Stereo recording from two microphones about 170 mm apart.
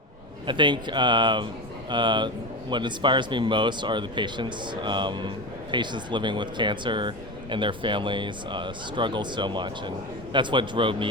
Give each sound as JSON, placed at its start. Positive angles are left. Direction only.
{"t": 0.4, "sound": "speech", "side_deg": -30}